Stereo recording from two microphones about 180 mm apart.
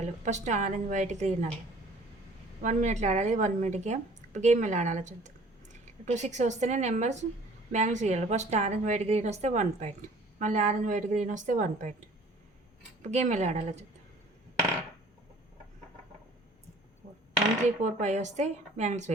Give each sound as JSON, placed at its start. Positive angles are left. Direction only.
{"t": 0.0, "sound": "speech", "side_deg": -40}
{"t": 2.6, "sound": "a woman's voice", "side_deg": -40}
{"t": 13.0, "sound": "speech", "side_deg": -40}
{"t": 17.8, "sound": "speech", "side_deg": -40}